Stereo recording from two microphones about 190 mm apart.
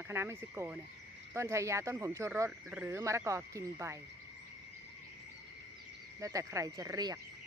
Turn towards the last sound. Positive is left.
turn(degrees=-20)  # may be behind; listen again after turning